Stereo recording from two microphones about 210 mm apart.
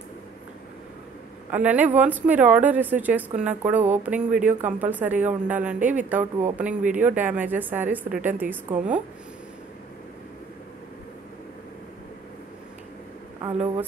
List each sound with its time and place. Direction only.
1.5 s speech: 5° right (ahead or behind)
6.8 s speech: 35° right (ahead or behind)
7.1 s speech: 10° right (ahead or behind)